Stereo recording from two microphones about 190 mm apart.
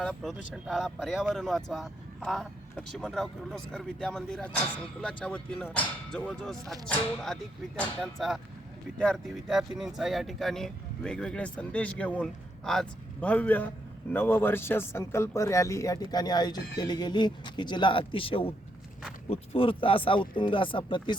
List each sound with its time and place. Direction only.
0.0 s speech: centre (ahead or behind); by 21.2 s 25° left (ahead or behind)